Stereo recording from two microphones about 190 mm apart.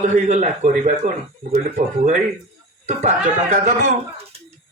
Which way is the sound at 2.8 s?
35° right (ahead or behind).